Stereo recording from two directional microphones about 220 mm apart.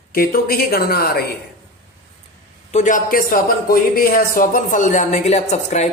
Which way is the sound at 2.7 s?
35° left (ahead or behind).